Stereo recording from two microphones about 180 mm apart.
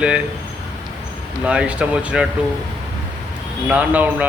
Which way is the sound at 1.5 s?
5° right (ahead or behind).